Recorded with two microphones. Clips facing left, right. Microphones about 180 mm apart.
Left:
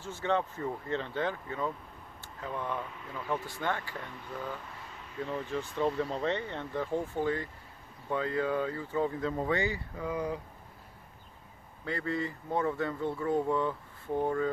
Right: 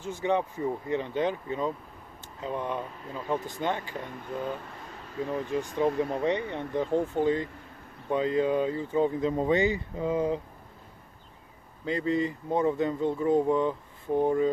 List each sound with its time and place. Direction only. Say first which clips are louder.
0.0 s speech: right 3 dB; 15° right (ahead or behind)
11.8 s speech: right 6 dB; 20° right (ahead or behind)